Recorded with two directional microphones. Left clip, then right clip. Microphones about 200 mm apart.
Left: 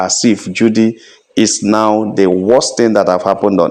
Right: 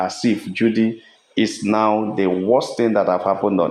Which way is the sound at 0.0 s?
45° left (ahead or behind).